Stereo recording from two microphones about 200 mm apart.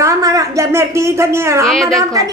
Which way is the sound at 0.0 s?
15° right (ahead or behind).